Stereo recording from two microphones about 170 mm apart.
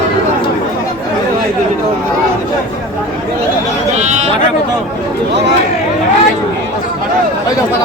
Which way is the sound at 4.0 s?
45° right (ahead or behind).